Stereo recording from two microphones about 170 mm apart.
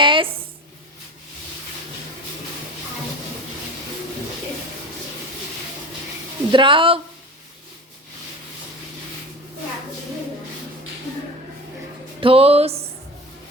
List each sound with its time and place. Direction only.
0.0 s a sound: 30° right (ahead or behind)
6.5 s speech: 30° right (ahead or behind)
12.2 s music: 35° right (ahead or behind)